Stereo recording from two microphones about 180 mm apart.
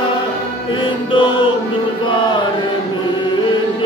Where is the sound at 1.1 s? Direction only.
30° left (ahead or behind).